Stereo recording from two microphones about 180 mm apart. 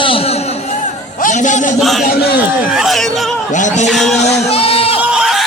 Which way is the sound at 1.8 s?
Centre (ahead or behind).